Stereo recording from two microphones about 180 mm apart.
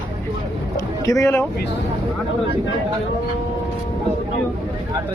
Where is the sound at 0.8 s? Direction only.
20° left (ahead or behind).